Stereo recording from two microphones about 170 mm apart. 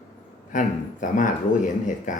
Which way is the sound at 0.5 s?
50° left (ahead or behind).